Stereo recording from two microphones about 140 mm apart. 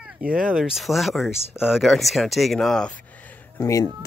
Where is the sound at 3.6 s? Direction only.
20° left (ahead or behind).